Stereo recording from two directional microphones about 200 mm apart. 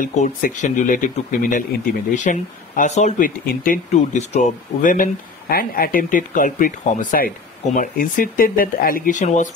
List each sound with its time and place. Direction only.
0.0 s speech: 40° left (ahead or behind)